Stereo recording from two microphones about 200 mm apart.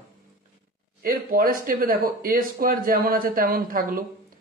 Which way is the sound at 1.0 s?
45° right (ahead or behind).